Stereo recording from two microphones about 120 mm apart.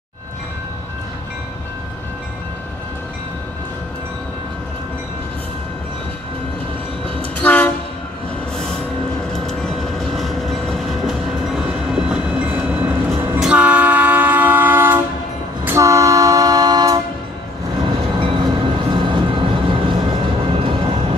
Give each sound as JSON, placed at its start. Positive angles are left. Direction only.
{"t": 7.3, "sound": "train", "side_deg": 15}
{"t": 9.3, "sound": "train", "side_deg": 5}
{"t": 17.8, "sound": "train", "side_deg": -40}